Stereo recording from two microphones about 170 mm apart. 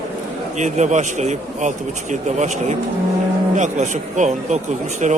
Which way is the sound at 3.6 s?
45° right (ahead or behind).